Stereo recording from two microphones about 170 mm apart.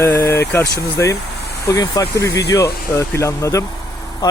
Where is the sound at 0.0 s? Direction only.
15° left (ahead or behind).